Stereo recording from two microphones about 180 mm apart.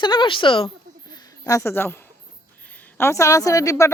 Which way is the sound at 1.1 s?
20° left (ahead or behind).